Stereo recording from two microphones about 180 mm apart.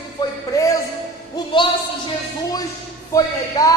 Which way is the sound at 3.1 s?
15° left (ahead or behind).